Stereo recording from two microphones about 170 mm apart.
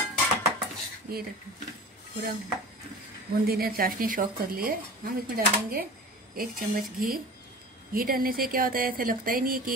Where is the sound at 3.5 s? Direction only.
60° right (ahead or behind).